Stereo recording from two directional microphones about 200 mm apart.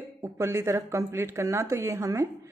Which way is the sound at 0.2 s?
15° right (ahead or behind).